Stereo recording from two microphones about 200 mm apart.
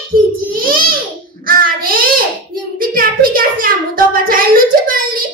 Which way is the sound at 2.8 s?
45° right (ahead or behind).